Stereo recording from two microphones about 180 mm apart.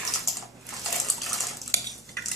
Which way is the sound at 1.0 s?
Centre (ahead or behind).